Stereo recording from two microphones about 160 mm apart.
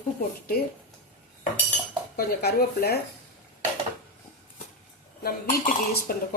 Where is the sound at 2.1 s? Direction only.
75° left (ahead or behind).